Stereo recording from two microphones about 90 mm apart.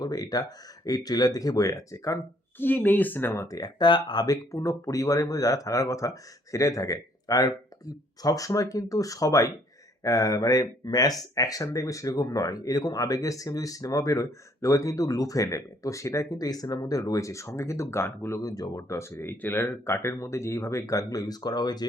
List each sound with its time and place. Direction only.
0.0 s speech: 45° left (ahead or behind)
2.6 s speech: 20° left (ahead or behind); by 3.7 s 40° left (ahead or behind)
3.8 s speech: 55° left (ahead or behind)
4.5 s speech: 35° left (ahead or behind)
18.3 s speech: 40° left (ahead or behind)